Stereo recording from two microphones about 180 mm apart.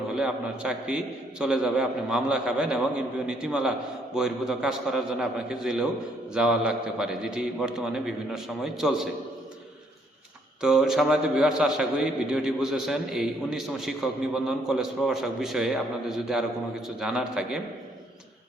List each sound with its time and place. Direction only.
0.1 s a man's voice: 5° right (ahead or behind)
10.6 s a man's voice: 5° right (ahead or behind)